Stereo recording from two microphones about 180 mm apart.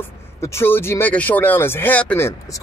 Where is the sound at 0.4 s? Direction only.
15° left (ahead or behind).